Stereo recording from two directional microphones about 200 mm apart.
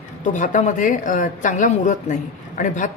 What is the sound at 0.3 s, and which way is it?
Speech, 40° left (ahead or behind).